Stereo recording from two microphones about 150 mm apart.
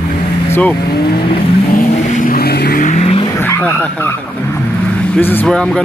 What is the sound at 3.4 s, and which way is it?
Speech, 15° left (ahead or behind).